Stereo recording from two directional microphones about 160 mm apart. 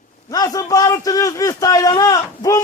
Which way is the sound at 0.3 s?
25° left (ahead or behind).